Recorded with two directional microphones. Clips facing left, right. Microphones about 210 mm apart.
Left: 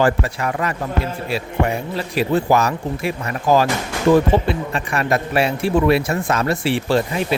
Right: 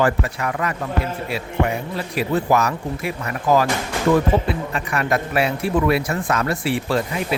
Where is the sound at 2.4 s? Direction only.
30° left (ahead or behind).